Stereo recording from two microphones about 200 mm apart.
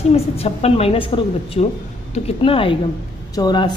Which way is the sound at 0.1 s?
30° left (ahead or behind).